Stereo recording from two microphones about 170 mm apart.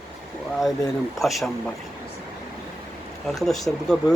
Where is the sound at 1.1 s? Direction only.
Centre (ahead or behind).